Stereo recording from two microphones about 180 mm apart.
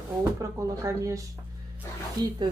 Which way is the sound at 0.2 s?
20° right (ahead or behind).